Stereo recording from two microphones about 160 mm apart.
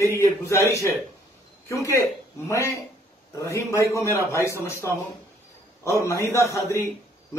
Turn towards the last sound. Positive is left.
turn(degrees=20)  # may be behind; listen again after turning